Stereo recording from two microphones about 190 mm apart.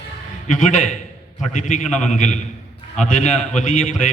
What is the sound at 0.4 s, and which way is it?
A man's voice, 40° left (ahead or behind).